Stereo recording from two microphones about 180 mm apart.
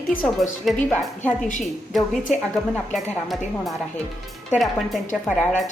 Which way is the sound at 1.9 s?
Centre (ahead or behind).